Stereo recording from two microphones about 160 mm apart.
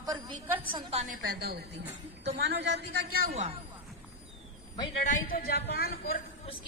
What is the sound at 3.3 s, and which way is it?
Speech, 40° right (ahead or behind).